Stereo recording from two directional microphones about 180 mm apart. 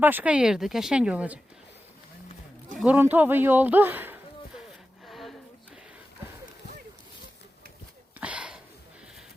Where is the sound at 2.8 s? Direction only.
10° right (ahead or behind).